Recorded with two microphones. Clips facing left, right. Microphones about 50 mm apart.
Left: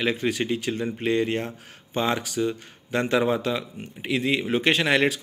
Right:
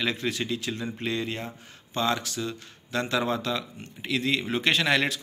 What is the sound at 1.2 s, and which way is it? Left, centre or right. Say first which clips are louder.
Speech: left 7 dB; left.